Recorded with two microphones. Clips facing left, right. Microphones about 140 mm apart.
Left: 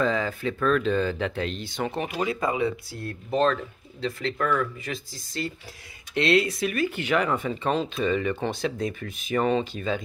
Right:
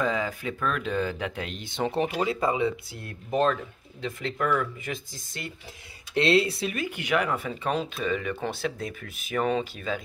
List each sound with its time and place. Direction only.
0.0 s speech: 10° right (ahead or behind)
1.8 s speech: 30° right (ahead or behind)
6.1 s speech: 30° right (ahead or behind); by 10.0 s centre (ahead or behind)